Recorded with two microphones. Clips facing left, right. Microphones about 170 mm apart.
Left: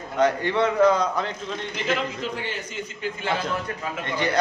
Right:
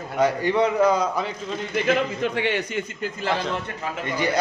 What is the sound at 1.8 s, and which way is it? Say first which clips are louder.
A man's voice: right 4 dB; 65° right (ahead or behind).